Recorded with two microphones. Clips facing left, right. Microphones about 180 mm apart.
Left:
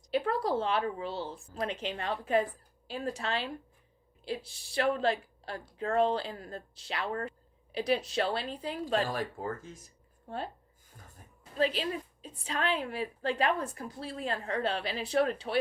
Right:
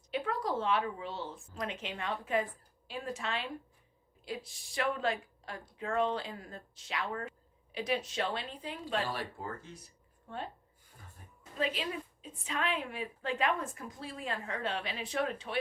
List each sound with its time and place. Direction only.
0.1 s a woman's voice: 35° left (ahead or behind)
11.5 s a woman's voice: 35° left (ahead or behind)